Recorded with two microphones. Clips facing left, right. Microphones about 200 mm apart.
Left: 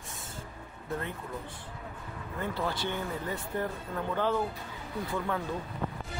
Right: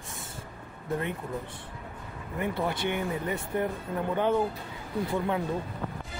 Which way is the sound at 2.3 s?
15° right (ahead or behind).